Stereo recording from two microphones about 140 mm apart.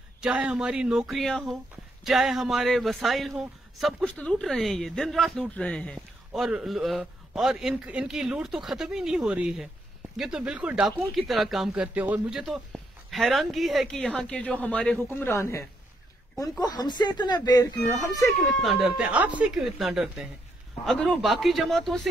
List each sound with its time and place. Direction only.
0.2 s speech: 10° right (ahead or behind); by 17.6 s 30° left (ahead or behind)
18.2 s speech: 5° left (ahead or behind)